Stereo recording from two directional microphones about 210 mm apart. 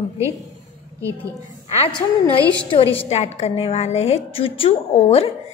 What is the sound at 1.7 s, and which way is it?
A woman's voice, 25° left (ahead or behind).